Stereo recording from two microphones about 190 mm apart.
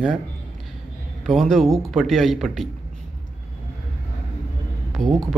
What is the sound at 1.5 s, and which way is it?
Speech, centre (ahead or behind).